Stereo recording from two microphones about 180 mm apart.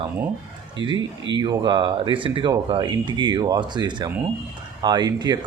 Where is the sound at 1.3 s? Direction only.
25° right (ahead or behind).